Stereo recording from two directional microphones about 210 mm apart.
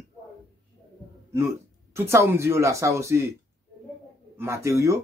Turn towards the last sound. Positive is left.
turn(degrees=-15)  # may be behind; listen again after turning